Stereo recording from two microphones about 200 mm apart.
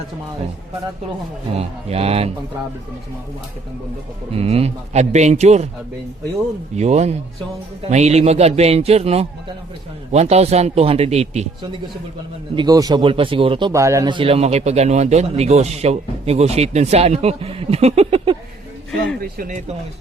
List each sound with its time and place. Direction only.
1.5 s speech: 30° right (ahead or behind)
4.3 s speech: 30° right (ahead or behind)
6.7 s speech: 35° right (ahead or behind)
12.5 s speech: 20° right (ahead or behind)
19.2 s speech: 45° right (ahead or behind)